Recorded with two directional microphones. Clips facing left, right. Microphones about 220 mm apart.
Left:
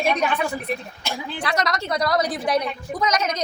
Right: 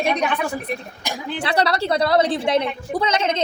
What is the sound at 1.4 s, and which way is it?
A woman's voice, 30° right (ahead or behind).